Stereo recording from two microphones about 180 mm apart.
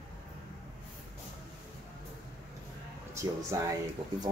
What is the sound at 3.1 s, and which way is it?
Speech, 15° right (ahead or behind).